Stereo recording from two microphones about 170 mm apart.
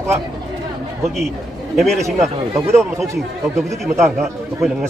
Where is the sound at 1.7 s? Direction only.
Centre (ahead or behind).